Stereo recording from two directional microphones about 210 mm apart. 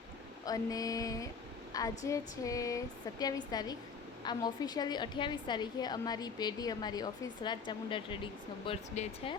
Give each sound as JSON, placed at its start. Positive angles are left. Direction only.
{"t": 0.4, "sound": "a woman's voice", "side_deg": 15}